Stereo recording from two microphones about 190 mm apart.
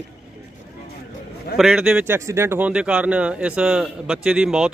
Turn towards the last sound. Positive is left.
turn(degrees=-5)  # may be behind; listen again after turning